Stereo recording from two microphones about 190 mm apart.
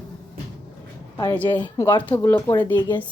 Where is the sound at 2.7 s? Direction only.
20° left (ahead or behind).